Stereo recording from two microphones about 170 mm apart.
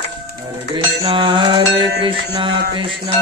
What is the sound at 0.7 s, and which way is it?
Music, 30° right (ahead or behind).